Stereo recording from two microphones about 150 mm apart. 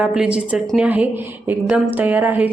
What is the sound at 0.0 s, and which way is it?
A woman's voice, 5° right (ahead or behind).